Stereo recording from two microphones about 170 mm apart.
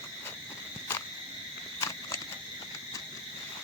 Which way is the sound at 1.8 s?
20° left (ahead or behind).